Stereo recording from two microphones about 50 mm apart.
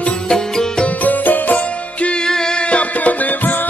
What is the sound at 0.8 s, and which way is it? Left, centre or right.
Music, left.